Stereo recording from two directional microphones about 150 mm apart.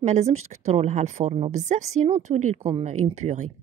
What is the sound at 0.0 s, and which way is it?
A woman's voice, 50° right (ahead or behind).